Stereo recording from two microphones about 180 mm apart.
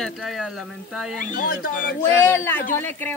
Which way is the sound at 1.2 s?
50° left (ahead or behind).